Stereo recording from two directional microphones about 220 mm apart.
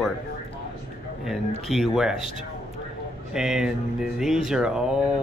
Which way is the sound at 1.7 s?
Centre (ahead or behind).